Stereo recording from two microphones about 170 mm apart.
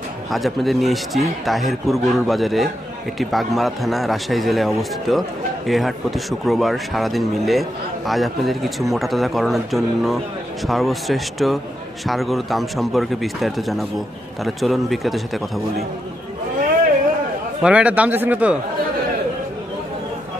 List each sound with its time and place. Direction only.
0.3 s speech: centre (ahead or behind)
17.6 s speech: 5° right (ahead or behind)